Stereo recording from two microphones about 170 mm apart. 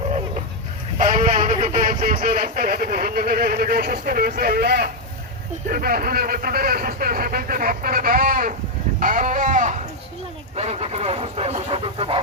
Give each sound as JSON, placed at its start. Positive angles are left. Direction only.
{"t": 0.9, "sound": "speech", "side_deg": -50}
{"t": 9.0, "sound": "sheep", "side_deg": -50}
{"t": 10.5, "sound": "speech", "side_deg": -40}